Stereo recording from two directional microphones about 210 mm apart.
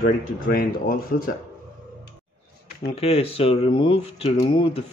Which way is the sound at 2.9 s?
30° left (ahead or behind).